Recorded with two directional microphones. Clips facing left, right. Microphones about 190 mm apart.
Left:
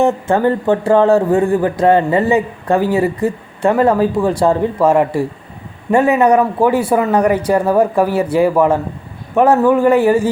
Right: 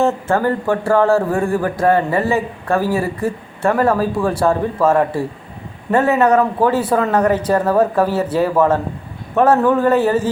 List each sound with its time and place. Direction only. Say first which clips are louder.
0.0 s a man's voice: left 3 dB; 20° left (ahead or behind)